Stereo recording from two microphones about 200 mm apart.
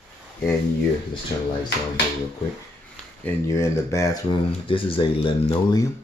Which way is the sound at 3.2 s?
15° left (ahead or behind).